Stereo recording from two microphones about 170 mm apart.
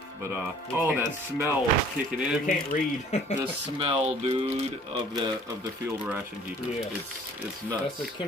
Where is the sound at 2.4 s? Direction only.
45° left (ahead or behind).